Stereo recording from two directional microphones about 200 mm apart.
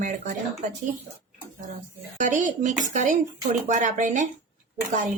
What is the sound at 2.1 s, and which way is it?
Speech, 40° right (ahead or behind).